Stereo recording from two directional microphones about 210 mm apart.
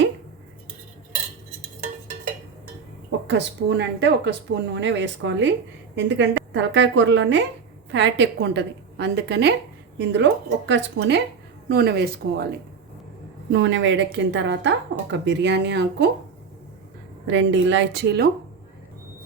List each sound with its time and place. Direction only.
3.2 s speech: 55° right (ahead or behind)
11.7 s speech: 50° right (ahead or behind)
13.5 s speech: 60° right (ahead or behind)
17.2 s speech: 60° right (ahead or behind)